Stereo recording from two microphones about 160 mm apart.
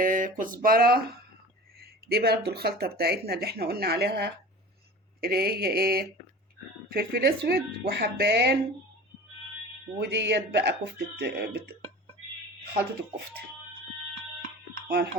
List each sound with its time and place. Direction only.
0.0 s a sound: 60° right (ahead or behind)
1.8 s speech: 80° right
5.2 s mantra: 75° right (ahead or behind)
6.9 s speech: 75° right (ahead or behind)
10.0 s speech: 90° right
14.8 s speech: 90° right